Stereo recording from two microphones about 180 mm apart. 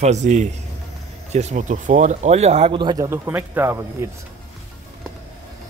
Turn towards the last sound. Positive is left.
turn(degrees=-15)  # may be behind; listen again after turning